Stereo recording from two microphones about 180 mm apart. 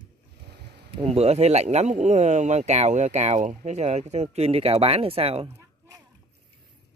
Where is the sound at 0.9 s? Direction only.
35° right (ahead or behind).